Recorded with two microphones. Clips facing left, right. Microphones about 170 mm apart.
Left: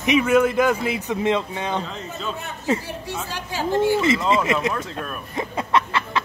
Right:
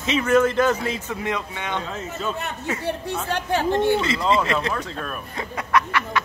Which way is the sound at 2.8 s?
60° right (ahead or behind).